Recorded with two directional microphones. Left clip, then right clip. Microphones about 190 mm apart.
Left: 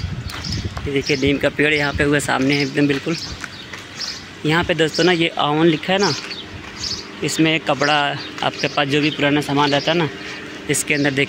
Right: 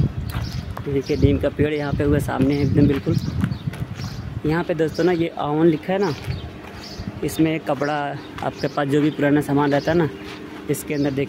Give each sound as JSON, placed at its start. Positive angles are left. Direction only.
{"t": 0.9, "sound": "speech", "side_deg": 0}
{"t": 4.5, "sound": "speech", "side_deg": 0}
{"t": 7.2, "sound": "speech", "side_deg": 0}
{"t": 8.5, "sound": "a man's voice", "side_deg": -15}
{"t": 10.7, "sound": "speech", "side_deg": -5}